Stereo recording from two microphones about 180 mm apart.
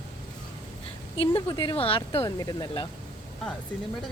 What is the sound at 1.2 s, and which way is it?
Speech, 30° left (ahead or behind).